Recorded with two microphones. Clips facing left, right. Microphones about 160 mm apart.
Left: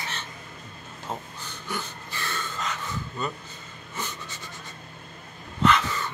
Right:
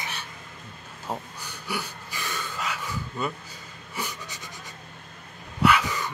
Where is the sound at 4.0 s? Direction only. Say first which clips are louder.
Right 1 dB; 15° right (ahead or behind).